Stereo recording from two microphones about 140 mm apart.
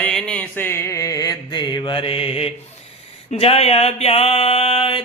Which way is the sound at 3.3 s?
45° left (ahead or behind).